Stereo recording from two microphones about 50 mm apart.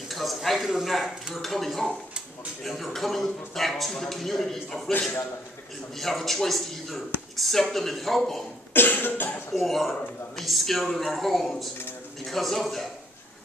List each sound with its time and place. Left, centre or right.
0.1 s speech: centre
5.9 s speech: centre
8.7 s cough: left
9.5 s speech: centre